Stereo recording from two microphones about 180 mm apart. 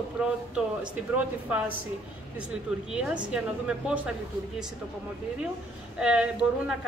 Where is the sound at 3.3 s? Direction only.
5° right (ahead or behind).